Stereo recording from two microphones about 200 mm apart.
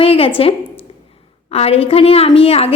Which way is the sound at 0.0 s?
30° left (ahead or behind).